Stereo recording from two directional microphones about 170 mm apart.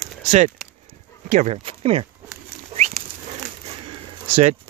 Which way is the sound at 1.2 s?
40° right (ahead or behind).